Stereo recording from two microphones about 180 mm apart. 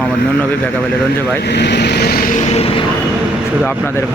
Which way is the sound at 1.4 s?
65° left (ahead or behind).